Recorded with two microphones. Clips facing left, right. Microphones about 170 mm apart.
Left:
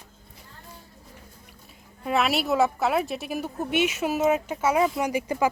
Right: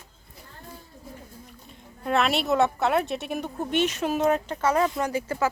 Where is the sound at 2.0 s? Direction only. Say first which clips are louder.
Even; 5° left (ahead or behind).